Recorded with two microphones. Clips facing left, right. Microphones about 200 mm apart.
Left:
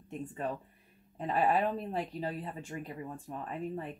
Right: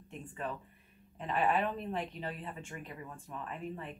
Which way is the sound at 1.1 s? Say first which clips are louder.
Left 2 dB; 40° left (ahead or behind).